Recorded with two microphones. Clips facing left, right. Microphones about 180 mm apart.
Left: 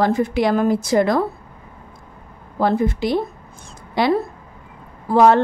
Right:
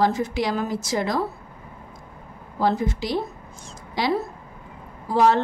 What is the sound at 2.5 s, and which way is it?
A woman's voice, 55° left (ahead or behind).